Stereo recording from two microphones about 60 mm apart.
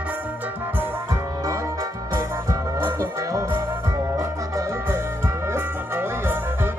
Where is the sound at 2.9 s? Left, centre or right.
Right.